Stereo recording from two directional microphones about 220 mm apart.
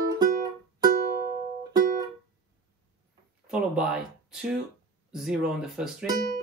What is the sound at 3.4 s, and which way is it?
Speech, 5° right (ahead or behind).